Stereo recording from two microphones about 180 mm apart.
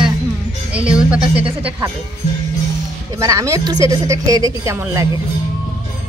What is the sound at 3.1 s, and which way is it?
Speech, 15° right (ahead or behind).